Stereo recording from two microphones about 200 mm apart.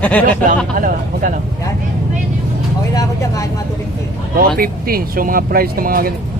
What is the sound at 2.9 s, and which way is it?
Speech, 15° left (ahead or behind).